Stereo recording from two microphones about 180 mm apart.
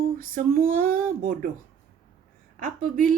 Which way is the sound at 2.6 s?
50° right (ahead or behind).